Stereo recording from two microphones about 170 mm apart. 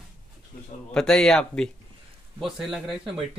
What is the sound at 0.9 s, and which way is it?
Speech, 5° left (ahead or behind).